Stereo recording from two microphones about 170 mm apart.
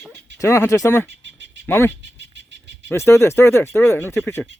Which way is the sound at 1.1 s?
90° right.